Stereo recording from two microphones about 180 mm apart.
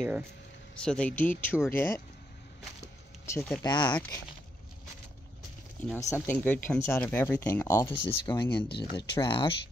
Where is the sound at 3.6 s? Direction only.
25° left (ahead or behind).